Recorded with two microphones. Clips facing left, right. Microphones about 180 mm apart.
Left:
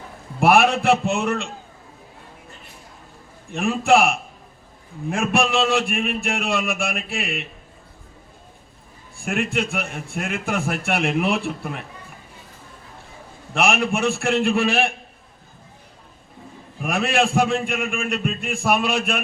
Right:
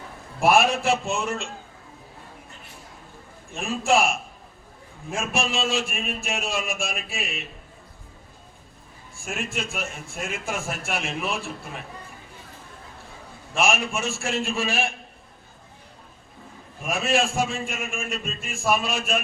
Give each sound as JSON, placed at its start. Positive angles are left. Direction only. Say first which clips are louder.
{"t": 0.3, "sound": "a man's voice", "louder": "left 3 dB", "side_deg": 60}
{"t": 3.5, "sound": "a man's voice", "louder": "left 5 dB", "side_deg": 60}
{"t": 9.2, "sound": "a man's voice", "louder": "left 7 dB", "side_deg": 60}
{"t": 13.5, "sound": "a man's voice", "louder": "left 3 dB", "side_deg": 60}
{"t": 16.8, "sound": "a man's voice", "louder": "left 3 dB", "side_deg": 60}